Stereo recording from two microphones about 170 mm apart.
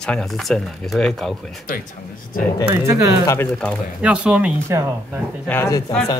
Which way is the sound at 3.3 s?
10° left (ahead or behind).